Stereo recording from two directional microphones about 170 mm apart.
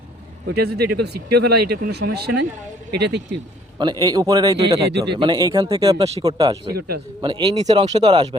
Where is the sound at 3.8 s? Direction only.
25° right (ahead or behind).